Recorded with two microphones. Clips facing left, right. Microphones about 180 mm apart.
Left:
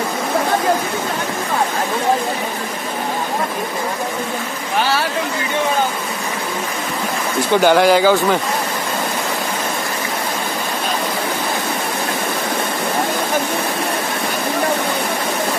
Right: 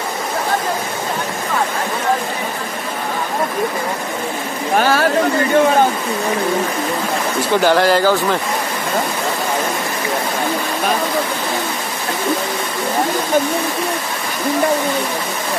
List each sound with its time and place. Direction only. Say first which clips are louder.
4.7 s speech: right 4 dB; 50° right (ahead or behind)
7.6 s speech: left 2 dB; centre (ahead or behind)